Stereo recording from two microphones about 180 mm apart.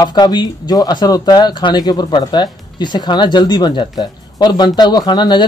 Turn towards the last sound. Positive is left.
turn(degrees=25)  # may be behind; listen again after turning